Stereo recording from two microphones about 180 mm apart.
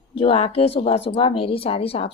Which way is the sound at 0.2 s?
30° left (ahead or behind).